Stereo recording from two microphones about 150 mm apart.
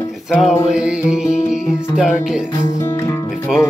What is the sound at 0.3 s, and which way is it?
Music, centre (ahead or behind).